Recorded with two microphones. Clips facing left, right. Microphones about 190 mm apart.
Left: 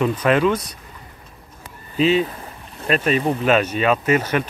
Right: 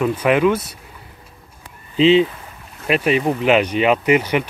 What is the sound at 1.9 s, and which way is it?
Speech, 20° right (ahead or behind).